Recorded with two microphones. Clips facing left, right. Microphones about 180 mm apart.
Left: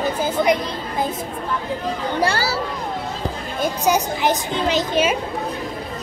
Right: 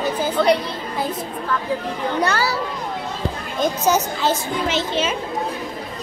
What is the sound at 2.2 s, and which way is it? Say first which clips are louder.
Speech: even; 30° left (ahead or behind).